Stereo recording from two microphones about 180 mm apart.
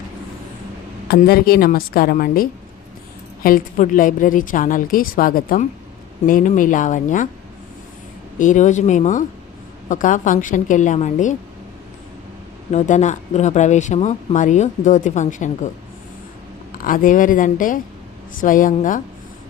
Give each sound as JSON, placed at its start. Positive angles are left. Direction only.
{"t": 1.0, "sound": "a woman's voice", "side_deg": 60}
{"t": 8.4, "sound": "a woman's voice", "side_deg": 45}
{"t": 12.7, "sound": "speech", "side_deg": 40}
{"t": 16.7, "sound": "a woman's voice", "side_deg": 50}